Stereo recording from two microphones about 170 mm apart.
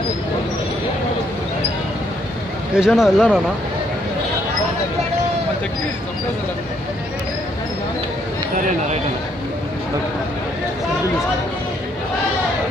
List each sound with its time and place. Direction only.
2.7 s speech: 5° right (ahead or behind)